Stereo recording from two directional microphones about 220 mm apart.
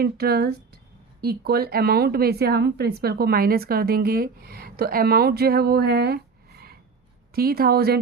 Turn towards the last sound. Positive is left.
turn(degrees=-45)  # may be behind; listen again after turning